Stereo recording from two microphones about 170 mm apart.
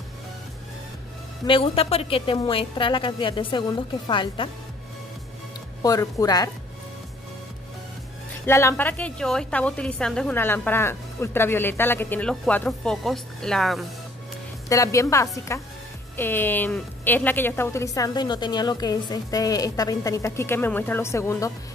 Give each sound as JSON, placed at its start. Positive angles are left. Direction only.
{"t": 1.4, "sound": "a woman's voice", "side_deg": 30}
{"t": 5.8, "sound": "speech", "side_deg": 20}
{"t": 8.5, "sound": "a woman's voice", "side_deg": 15}
{"t": 14.7, "sound": "a woman's voice", "side_deg": 20}